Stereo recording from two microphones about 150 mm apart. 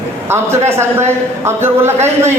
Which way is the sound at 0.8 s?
15° right (ahead or behind).